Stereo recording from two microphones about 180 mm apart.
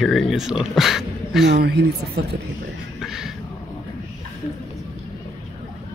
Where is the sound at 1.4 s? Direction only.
70° right (ahead or behind).